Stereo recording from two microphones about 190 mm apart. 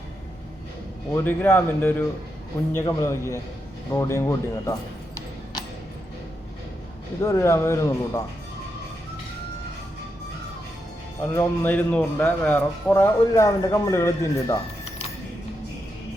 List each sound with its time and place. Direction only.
1.1 s a man's voice: 10° left (ahead or behind)
7.2 s a man's voice: 15° left (ahead or behind)
11.2 s a man's voice: 10° left (ahead or behind)